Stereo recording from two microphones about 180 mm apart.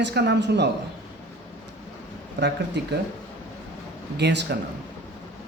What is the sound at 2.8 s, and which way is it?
Speech, 70° right (ahead or behind).